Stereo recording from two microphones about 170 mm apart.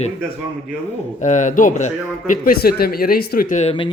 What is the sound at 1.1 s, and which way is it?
A man's voice, 45° left (ahead or behind).